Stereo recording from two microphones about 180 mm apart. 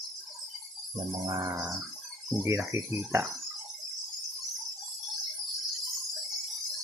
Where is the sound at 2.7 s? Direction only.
15° right (ahead or behind).